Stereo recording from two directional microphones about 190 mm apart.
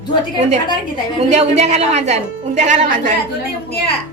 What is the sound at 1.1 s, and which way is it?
A woman's voice, 35° right (ahead or behind).